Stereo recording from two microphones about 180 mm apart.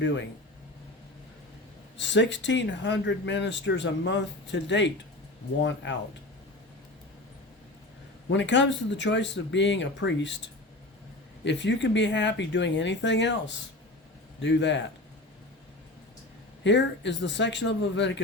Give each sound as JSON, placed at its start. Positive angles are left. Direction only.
{"t": 2.0, "sound": "speech", "side_deg": 80}
{"t": 8.3, "sound": "speech", "side_deg": 80}
{"t": 16.6, "sound": "speech", "side_deg": 80}